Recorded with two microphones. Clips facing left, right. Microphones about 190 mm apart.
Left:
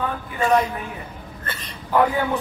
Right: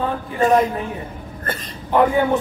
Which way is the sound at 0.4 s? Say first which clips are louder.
Right 4 dB; 45° right (ahead or behind).